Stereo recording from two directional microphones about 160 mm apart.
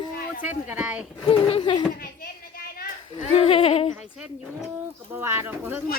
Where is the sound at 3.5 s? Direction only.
35° left (ahead or behind).